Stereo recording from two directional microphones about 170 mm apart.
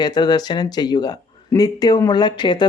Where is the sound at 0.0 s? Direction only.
25° left (ahead or behind).